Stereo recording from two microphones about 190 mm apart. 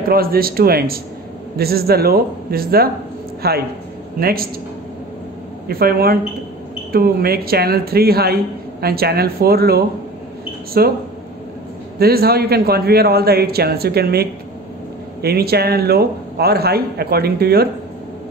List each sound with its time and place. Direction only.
0.1 s a man's voice: 50° right (ahead or behind)
5.7 s a man's voice: 55° right (ahead or behind)
12.0 s a man's voice: 55° right (ahead or behind)
15.2 s a man's voice: 55° right (ahead or behind)